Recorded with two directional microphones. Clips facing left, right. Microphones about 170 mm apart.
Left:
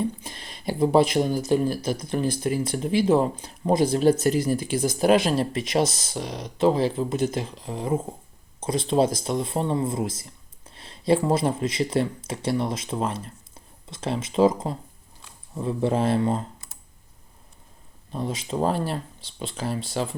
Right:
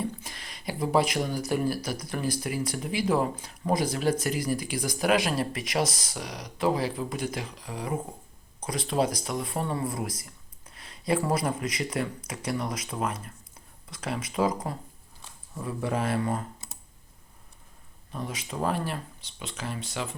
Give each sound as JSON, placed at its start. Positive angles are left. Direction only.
{"t": 0.3, "sound": "speech", "side_deg": 25}
{"t": 18.1, "sound": "speech", "side_deg": 30}